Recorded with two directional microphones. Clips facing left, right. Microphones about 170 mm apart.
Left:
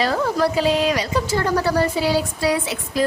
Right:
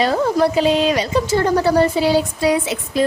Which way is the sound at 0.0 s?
20° right (ahead or behind).